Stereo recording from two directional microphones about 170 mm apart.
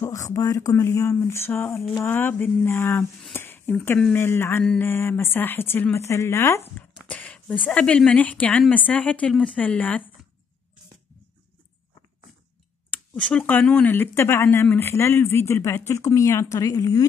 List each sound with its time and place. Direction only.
0.0 s speech: 15° left (ahead or behind)
7.1 s speech: 5° left (ahead or behind)
12.9 s speech: 5° left (ahead or behind)